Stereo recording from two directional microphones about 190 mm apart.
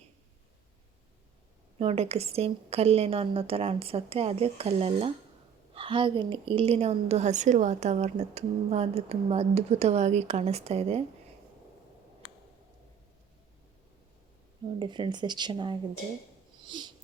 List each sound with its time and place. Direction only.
1.8 s a woman's voice: 30° right (ahead or behind)
14.8 s speech: 25° right (ahead or behind)
16.6 s a sound: 25° right (ahead or behind)